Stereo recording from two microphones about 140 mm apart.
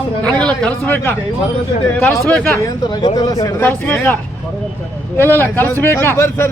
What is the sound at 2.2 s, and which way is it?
Speech, 5° left (ahead or behind).